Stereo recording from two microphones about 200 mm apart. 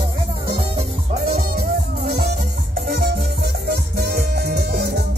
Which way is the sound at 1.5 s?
50° right (ahead or behind).